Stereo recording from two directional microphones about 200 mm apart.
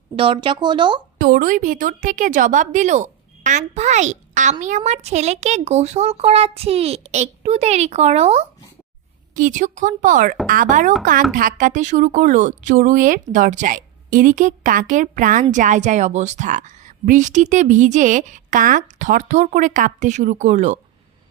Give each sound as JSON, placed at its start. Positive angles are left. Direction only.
{"t": 0.2, "sound": "speech", "side_deg": -25}
{"t": 1.2, "sound": "a woman's voice", "side_deg": -45}